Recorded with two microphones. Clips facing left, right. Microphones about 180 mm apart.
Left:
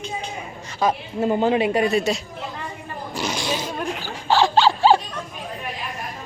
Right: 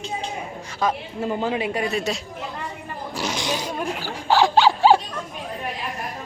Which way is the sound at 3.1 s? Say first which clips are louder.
Left 1 dB; 5° right (ahead or behind).